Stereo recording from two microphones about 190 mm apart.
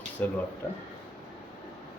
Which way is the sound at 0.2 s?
10° left (ahead or behind).